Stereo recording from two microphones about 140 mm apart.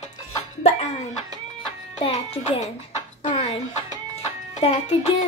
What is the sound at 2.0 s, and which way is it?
Music, 45° left (ahead or behind).